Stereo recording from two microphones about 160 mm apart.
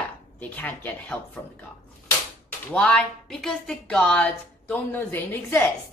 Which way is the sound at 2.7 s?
5° left (ahead or behind).